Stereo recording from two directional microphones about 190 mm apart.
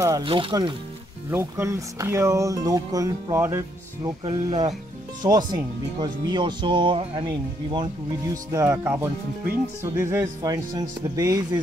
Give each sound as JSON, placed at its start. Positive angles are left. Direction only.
{"t": 0.0, "sound": "speech", "side_deg": -25}
{"t": 1.3, "sound": "speech", "side_deg": -15}